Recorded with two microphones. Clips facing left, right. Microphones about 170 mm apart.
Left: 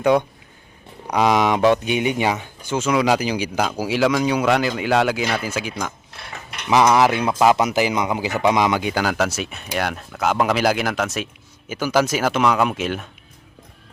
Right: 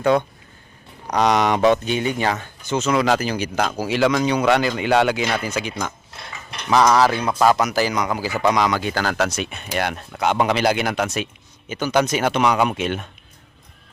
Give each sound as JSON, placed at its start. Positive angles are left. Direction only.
{"t": 0.0, "sound": "speech", "side_deg": 15}